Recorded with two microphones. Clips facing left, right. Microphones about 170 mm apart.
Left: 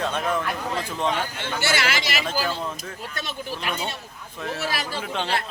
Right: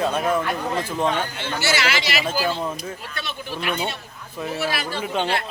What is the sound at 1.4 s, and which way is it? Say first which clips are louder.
Speech: right 1 dB; 55° left (ahead or behind).